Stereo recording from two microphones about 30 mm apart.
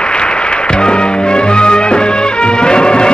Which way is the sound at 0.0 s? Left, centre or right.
Left.